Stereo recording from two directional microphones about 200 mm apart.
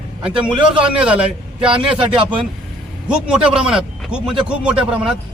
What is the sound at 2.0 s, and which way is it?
Speech, 25° right (ahead or behind).